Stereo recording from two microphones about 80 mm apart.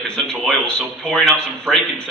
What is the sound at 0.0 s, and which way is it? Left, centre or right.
Speech, centre.